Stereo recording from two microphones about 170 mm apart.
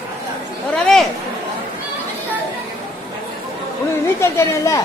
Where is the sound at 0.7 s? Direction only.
5° left (ahead or behind).